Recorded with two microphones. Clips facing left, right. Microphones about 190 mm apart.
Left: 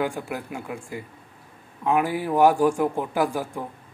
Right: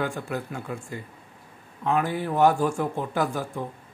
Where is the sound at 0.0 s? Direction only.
10° left (ahead or behind).